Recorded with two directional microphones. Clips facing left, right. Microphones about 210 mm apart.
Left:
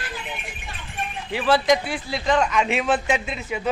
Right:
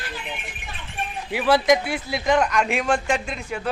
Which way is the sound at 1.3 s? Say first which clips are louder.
Right 1 dB; 10° right (ahead or behind).